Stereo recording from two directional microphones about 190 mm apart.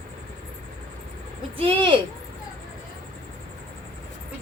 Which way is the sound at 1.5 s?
30° right (ahead or behind).